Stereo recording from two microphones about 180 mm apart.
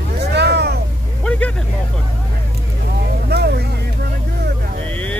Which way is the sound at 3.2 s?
65° right (ahead or behind).